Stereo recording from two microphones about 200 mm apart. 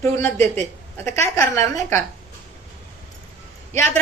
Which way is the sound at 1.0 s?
10° left (ahead or behind).